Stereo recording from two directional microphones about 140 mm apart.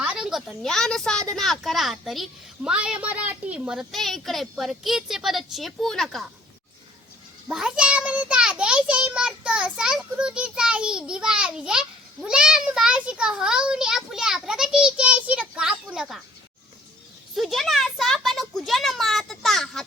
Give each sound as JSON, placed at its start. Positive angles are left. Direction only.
{"t": 0.0, "sound": "a child's voice", "side_deg": -5}
{"t": 7.4, "sound": "a child's voice", "side_deg": -5}
{"t": 17.3, "sound": "a child's voice", "side_deg": 0}